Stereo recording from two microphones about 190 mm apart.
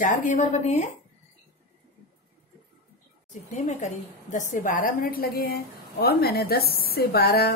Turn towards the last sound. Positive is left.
turn(degrees=55)  # may be behind; listen again after turning